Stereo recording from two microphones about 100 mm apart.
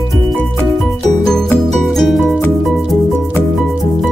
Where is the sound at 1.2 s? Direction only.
5° left (ahead or behind).